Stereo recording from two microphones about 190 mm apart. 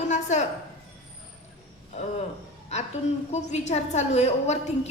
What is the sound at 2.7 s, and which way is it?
A woman's voice, 35° left (ahead or behind).